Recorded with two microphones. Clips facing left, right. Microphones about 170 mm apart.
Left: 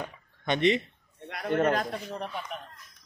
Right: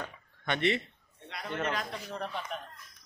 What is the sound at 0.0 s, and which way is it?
Chop, 20° left (ahead or behind).